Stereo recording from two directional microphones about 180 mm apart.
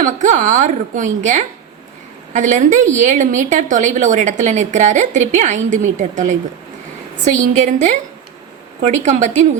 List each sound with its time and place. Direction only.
0.0 s a woman's voice: 45° right (ahead or behind)
7.3 s a woman's voice: 40° right (ahead or behind)